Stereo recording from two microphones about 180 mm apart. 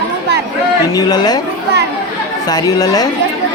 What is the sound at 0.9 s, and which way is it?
Speech, 20° left (ahead or behind).